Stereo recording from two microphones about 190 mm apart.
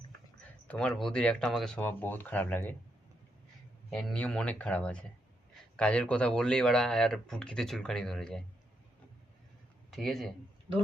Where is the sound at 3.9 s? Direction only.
5° left (ahead or behind).